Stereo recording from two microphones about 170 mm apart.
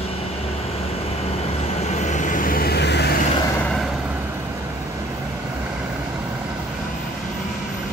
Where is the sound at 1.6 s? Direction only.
40° left (ahead or behind); by 3.1 s 80° left.